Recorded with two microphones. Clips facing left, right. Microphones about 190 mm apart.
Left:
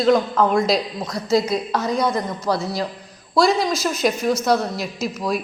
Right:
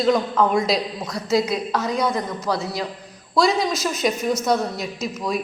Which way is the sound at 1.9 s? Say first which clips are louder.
Left 2 dB; 20° left (ahead or behind).